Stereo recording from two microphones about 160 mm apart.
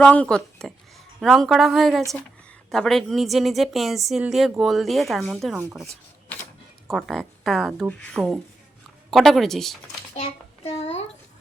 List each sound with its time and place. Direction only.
0.0 s a woman's voice: 5° left (ahead or behind)
6.9 s a woman's voice: centre (ahead or behind)
10.2 s child singing: 35° left (ahead or behind)